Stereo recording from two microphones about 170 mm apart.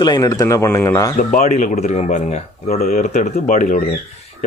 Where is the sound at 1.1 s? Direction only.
50° left (ahead or behind).